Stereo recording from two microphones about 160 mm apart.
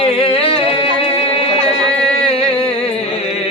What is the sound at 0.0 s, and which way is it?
Music, 35° left (ahead or behind).